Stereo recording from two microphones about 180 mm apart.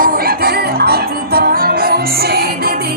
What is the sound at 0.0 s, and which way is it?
Music, 55° right (ahead or behind).